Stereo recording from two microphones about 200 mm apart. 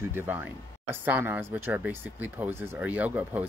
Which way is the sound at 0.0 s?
10° right (ahead or behind).